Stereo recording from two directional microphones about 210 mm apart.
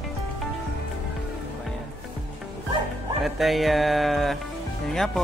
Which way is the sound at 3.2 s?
Centre (ahead or behind).